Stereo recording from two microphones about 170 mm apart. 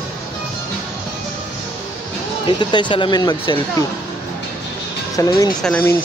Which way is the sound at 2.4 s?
30° left (ahead or behind).